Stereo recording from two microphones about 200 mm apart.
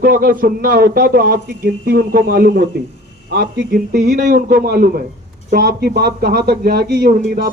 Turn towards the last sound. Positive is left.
turn(degrees=-50)  # may be behind; listen again after turning